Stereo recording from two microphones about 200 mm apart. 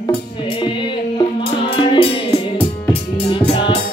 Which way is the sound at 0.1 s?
25° left (ahead or behind).